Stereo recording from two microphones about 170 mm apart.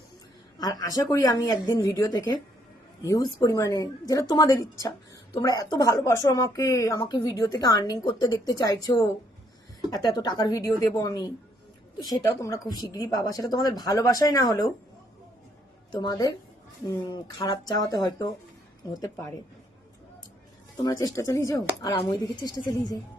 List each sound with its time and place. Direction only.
0.6 s speech: 20° left (ahead or behind)
15.9 s speech: 25° left (ahead or behind)
20.8 s speech: 20° left (ahead or behind)